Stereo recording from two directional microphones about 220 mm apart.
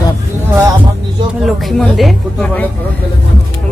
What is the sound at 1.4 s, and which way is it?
Speech, centre (ahead or behind).